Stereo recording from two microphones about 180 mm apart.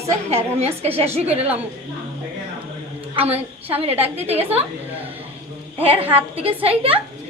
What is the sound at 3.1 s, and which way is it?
A woman's voice, 35° right (ahead or behind).